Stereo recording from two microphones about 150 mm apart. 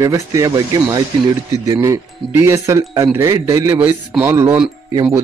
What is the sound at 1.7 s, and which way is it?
Speech, 20° right (ahead or behind).